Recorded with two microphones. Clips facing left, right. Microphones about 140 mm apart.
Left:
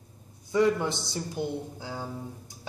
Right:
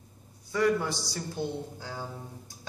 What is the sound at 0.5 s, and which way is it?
A man's voice, 20° left (ahead or behind).